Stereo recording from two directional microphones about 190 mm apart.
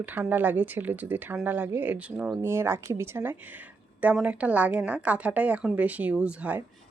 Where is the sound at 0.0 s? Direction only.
10° right (ahead or behind).